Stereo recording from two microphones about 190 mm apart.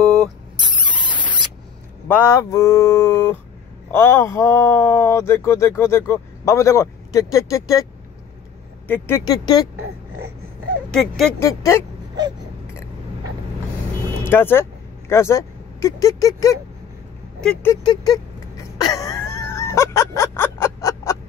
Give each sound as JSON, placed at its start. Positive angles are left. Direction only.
{"t": 0.0, "sound": "squeal", "side_deg": 0}
{"t": 0.7, "sound": "rodents", "side_deg": -25}
{"t": 2.0, "sound": "speech", "side_deg": 10}
{"t": 8.8, "sound": "speech", "side_deg": 10}
{"t": 10.9, "sound": "speech", "side_deg": 0}
{"t": 11.3, "sound": "speech", "side_deg": 15}
{"t": 14.2, "sound": "speech", "side_deg": 10}
{"t": 17.4, "sound": "speech", "side_deg": 5}
{"t": 17.8, "sound": "whimper", "side_deg": 20}